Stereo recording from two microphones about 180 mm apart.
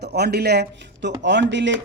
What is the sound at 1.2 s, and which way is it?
Speech, 80° right.